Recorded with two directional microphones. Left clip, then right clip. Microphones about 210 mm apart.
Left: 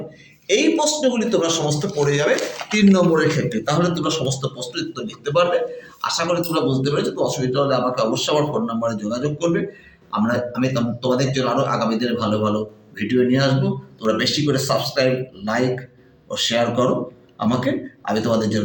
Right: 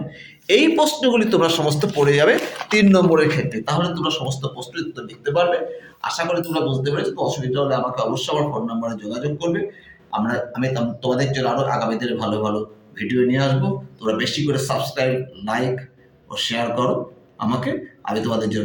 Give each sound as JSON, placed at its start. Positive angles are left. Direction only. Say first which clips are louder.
{"t": 0.4, "sound": "a man's voice", "louder": "right 2 dB", "side_deg": -55}
{"t": 3.5, "sound": "a man's voice", "louder": "left 2 dB", "side_deg": -20}